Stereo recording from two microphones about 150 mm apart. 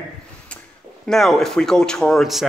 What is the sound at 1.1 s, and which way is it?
Speech, centre (ahead or behind).